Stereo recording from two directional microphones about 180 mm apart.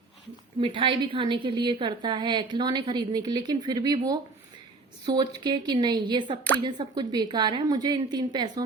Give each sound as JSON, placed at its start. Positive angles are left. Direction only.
{"t": 0.6, "sound": "a woman's voice", "side_deg": -30}